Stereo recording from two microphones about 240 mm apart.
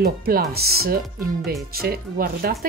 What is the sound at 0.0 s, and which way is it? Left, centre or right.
Speech, right.